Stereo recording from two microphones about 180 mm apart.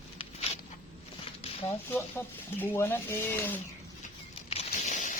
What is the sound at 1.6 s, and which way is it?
Speech, 10° left (ahead or behind).